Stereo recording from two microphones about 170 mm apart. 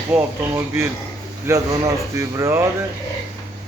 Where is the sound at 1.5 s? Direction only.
15° right (ahead or behind).